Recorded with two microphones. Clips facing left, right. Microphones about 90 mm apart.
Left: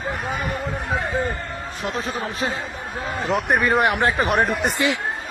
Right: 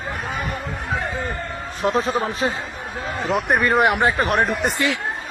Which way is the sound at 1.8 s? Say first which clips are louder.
Right 7 dB; 35° right (ahead or behind).